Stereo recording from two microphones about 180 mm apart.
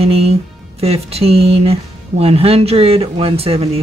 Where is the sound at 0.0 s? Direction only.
35° right (ahead or behind).